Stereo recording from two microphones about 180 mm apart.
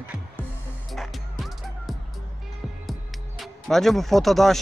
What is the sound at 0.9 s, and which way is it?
Music, centre (ahead or behind).